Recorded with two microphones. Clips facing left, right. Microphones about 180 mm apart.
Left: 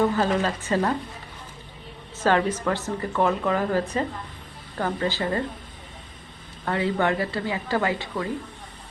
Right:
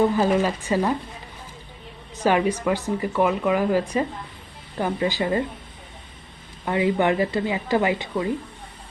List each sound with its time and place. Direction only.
0.0 s speech: 10° right (ahead or behind)
2.1 s speech: 15° right (ahead or behind)
6.7 s speech: 15° right (ahead or behind)